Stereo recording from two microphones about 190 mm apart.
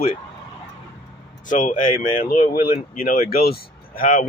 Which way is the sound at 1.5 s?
45° left (ahead or behind).